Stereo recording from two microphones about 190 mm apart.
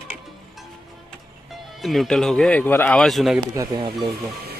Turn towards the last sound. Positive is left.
turn(degrees=-25)  # may be behind; listen again after turning